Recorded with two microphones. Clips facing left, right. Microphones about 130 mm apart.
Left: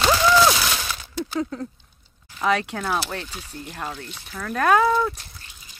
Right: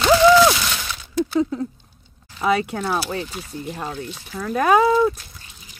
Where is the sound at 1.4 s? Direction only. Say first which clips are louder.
Right 6 dB; 5° right (ahead or behind).